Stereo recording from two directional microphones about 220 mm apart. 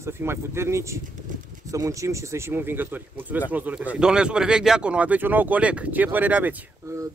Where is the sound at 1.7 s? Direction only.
15° right (ahead or behind).